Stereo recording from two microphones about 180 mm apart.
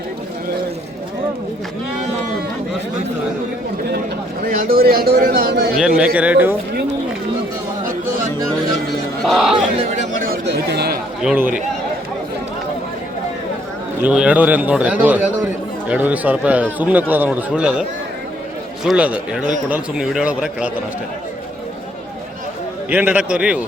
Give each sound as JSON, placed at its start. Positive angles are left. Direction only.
{"t": 4.4, "sound": "a man's voice", "side_deg": -55}
{"t": 5.7, "sound": "a man's voice", "side_deg": -5}
{"t": 9.2, "sound": "speech", "side_deg": 0}
{"t": 9.7, "sound": "speech", "side_deg": -40}
{"t": 11.2, "sound": "a man's voice", "side_deg": -5}
{"t": 14.0, "sound": "a man's voice", "side_deg": -5}
{"t": 18.9, "sound": "a man's voice", "side_deg": -5}
{"t": 22.9, "sound": "a man's voice", "side_deg": -10}